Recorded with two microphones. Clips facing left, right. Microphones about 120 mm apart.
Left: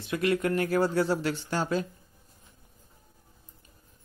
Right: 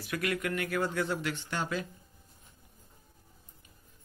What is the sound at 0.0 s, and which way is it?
Speech, 25° left (ahead or behind).